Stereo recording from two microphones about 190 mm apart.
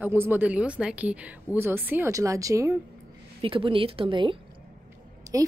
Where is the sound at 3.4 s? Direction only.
25° right (ahead or behind).